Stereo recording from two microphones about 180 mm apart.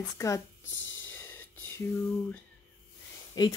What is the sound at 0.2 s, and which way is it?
Speech, 15° left (ahead or behind).